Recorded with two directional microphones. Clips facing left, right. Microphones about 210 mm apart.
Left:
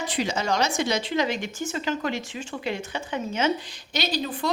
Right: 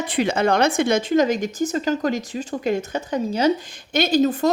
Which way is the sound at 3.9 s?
50° right (ahead or behind).